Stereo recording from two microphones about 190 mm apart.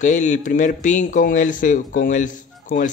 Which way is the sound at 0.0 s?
40° left (ahead or behind).